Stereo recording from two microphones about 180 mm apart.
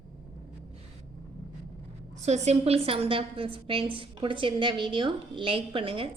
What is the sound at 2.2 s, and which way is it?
A woman's voice, 40° right (ahead or behind).